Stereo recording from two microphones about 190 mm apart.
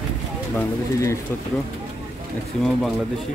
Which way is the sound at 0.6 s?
15° left (ahead or behind).